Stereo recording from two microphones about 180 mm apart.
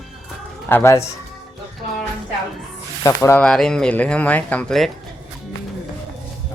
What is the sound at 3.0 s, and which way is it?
Speech, 20° left (ahead or behind).